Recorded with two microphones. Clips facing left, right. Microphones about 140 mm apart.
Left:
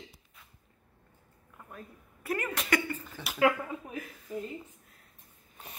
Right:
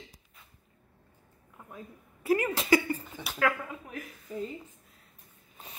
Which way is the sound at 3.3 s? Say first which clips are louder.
Left 3 dB; 20° left (ahead or behind).